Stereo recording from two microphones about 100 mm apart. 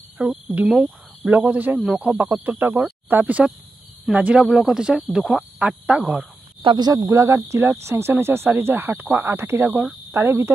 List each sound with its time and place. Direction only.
0.2 s speech: centre (ahead or behind)
0.6 s speech: 15° right (ahead or behind)
2.1 s frog: 15° right (ahead or behind)
2.6 s cricket: 20° right (ahead or behind)
4.1 s frog: 10° right (ahead or behind)
4.5 s speech: 5° right (ahead or behind)
5.6 s frog: 10° right (ahead or behind)
6.6 s speech: 55° right (ahead or behind)
6.9 s cricket: 35° right (ahead or behind)